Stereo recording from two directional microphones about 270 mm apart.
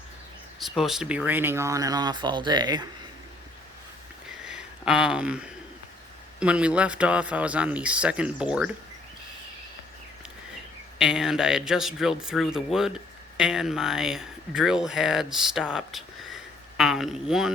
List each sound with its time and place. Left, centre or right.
0.6 s speech: centre
4.4 s a sound: centre
6.4 s a man's voice: centre
10.9 s a man's voice: centre